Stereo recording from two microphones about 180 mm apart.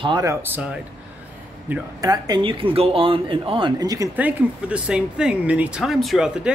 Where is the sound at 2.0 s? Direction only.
20° right (ahead or behind).